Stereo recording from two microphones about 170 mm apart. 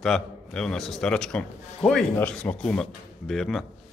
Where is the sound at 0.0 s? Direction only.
5° left (ahead or behind).